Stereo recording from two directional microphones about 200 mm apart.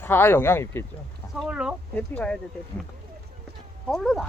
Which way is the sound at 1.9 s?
5° left (ahead or behind).